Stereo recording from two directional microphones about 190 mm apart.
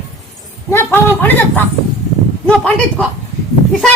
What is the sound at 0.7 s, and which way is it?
A man's voice, 10° left (ahead or behind).